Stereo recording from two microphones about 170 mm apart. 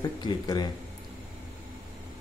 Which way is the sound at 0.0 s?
25° left (ahead or behind).